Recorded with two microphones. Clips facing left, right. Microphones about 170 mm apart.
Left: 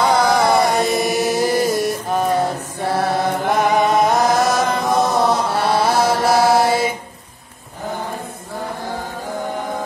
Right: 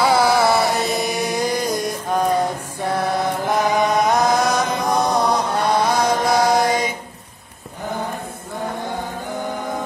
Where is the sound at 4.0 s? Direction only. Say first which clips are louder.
Left 2 dB; centre (ahead or behind).